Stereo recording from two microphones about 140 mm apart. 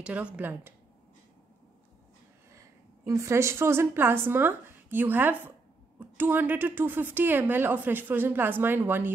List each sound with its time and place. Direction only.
0.0 s a woman's voice: 10° right (ahead or behind)
2.5 s a woman's voice: 20° right (ahead or behind)